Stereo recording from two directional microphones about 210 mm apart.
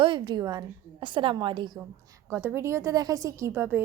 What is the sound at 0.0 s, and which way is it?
A woman's voice, 20° right (ahead or behind).